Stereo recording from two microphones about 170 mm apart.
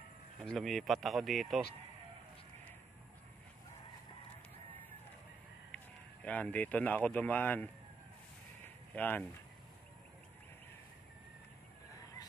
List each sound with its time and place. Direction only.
0.4 s speech: centre (ahead or behind)
6.2 s speech: 10° left (ahead or behind)
8.6 s a sound: 10° left (ahead or behind)